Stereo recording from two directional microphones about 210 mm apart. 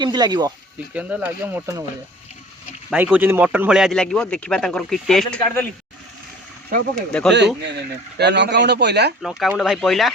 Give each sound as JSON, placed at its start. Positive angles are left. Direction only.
{"t": 0.0, "sound": "speech", "side_deg": -20}
{"t": 0.9, "sound": "speech", "side_deg": -5}
{"t": 2.9, "sound": "a man's voice", "side_deg": -5}
{"t": 7.1, "sound": "a man's voice", "side_deg": 5}
{"t": 7.3, "sound": "speech", "side_deg": -55}
{"t": 9.2, "sound": "a man's voice", "side_deg": 0}